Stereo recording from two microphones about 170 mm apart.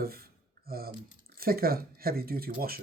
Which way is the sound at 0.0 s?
60° right (ahead or behind).